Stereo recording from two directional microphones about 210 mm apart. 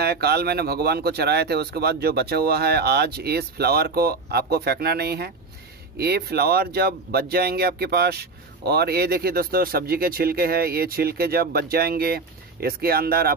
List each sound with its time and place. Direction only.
0.0 s speech: 50° right (ahead or behind)